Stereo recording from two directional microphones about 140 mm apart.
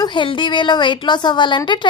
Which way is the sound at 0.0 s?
35° left (ahead or behind).